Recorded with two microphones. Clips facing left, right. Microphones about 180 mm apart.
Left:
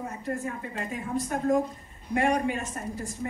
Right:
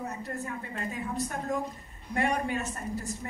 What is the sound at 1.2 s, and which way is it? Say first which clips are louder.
A woman's voice: left 8 dB; 45° left (ahead or behind).